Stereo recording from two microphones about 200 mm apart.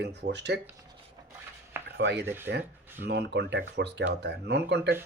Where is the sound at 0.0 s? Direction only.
60° right (ahead or behind).